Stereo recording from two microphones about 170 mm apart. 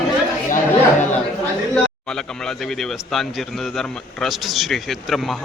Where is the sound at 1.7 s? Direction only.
5° left (ahead or behind).